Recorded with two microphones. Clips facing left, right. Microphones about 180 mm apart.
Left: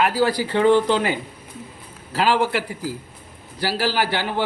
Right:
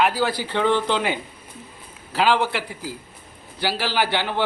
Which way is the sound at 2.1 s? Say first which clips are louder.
Left 1 dB; 5° left (ahead or behind).